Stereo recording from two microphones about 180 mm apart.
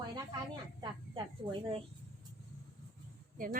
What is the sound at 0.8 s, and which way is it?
Speech, 25° right (ahead or behind).